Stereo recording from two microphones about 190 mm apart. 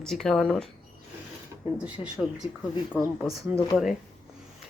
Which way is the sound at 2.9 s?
10° left (ahead or behind).